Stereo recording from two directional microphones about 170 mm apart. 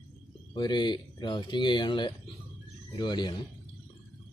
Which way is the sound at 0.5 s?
25° left (ahead or behind).